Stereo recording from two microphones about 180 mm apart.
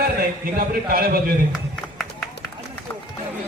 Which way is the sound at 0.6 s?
55° right (ahead or behind).